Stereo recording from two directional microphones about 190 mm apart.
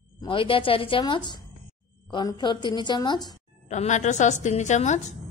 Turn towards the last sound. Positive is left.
turn(degrees=35)  # may be behind; listen again after turning